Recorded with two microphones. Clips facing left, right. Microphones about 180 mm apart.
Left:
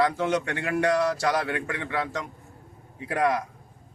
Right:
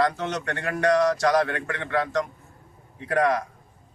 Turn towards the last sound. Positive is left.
turn(degrees=5)  # may be behind; listen again after turning